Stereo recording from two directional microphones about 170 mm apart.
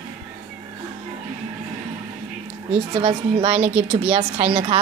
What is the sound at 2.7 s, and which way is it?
A woman's voice, 30° right (ahead or behind).